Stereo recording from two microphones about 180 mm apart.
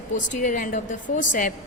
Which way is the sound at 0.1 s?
45° left (ahead or behind).